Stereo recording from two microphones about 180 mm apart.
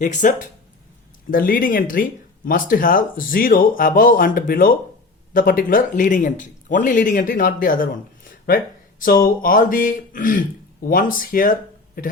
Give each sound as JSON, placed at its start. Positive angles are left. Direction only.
{"t": 0.0, "sound": "speech", "side_deg": 45}